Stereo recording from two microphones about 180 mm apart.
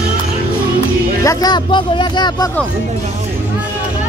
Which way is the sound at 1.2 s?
20° left (ahead or behind).